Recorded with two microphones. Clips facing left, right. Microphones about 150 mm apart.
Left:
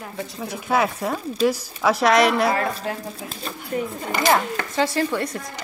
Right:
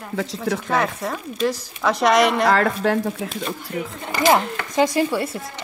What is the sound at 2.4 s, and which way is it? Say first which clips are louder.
Speech: right 4 dB; 90° right.